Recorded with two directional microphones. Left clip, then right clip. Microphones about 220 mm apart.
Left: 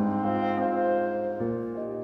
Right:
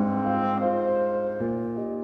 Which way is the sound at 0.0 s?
20° right (ahead or behind).